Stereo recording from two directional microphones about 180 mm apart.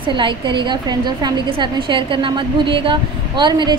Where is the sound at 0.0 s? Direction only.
25° right (ahead or behind).